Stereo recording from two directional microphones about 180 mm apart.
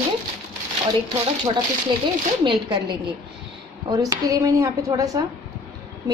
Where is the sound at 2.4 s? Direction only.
25° right (ahead or behind).